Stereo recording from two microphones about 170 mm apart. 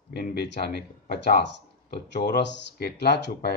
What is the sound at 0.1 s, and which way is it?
A man's voice, 70° left (ahead or behind).